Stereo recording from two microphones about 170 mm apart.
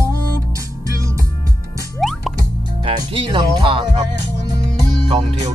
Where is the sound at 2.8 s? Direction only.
30° right (ahead or behind).